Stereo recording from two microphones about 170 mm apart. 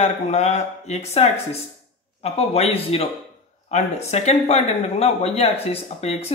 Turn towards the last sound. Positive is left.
turn(degrees=35)  # may be behind; listen again after turning